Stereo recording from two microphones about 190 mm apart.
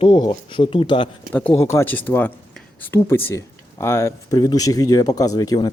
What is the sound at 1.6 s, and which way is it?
Speech, 15° left (ahead or behind).